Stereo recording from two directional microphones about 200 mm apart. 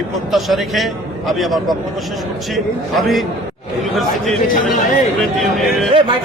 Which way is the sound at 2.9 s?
Centre (ahead or behind).